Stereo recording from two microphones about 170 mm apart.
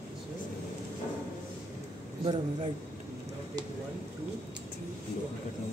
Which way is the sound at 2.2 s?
30° right (ahead or behind).